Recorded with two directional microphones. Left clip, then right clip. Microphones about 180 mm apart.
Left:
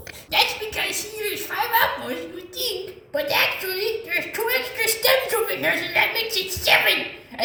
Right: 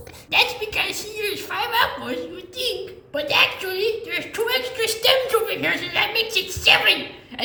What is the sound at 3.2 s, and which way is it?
A woman's voice, 20° left (ahead or behind).